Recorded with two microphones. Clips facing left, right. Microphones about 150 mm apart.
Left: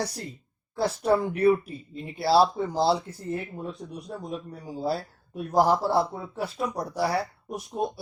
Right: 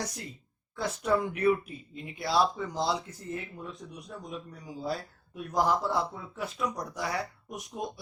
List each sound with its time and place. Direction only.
0.0 s speech: 35° left (ahead or behind)